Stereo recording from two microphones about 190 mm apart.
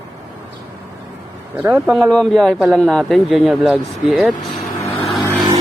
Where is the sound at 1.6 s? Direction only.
10° right (ahead or behind).